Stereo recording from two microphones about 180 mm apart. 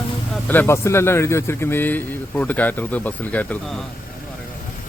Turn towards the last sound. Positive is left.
turn(degrees=10)  # may be behind; listen again after turning